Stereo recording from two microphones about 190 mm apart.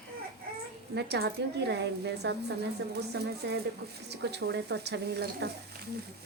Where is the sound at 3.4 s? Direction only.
65° right (ahead or behind).